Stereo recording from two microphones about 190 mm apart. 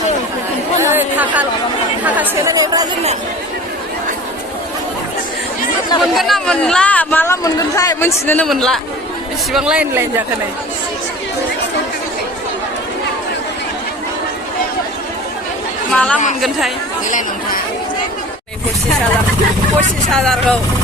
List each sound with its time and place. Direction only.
0.8 s chatter: 10° right (ahead or behind)
2.0 s speech: 10° right (ahead or behind)
6.0 s speech: centre (ahead or behind)
15.9 s a woman's voice: 5° left (ahead or behind)
17.1 s speech: 40° left (ahead or behind)
20.1 s speech: 5° left (ahead or behind)